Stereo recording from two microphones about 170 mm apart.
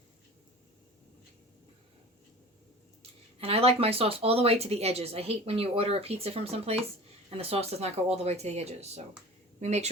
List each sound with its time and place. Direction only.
3.0 s speech: 35° right (ahead or behind)